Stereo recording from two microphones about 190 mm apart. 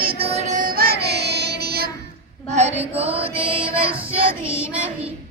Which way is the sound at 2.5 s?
35° right (ahead or behind).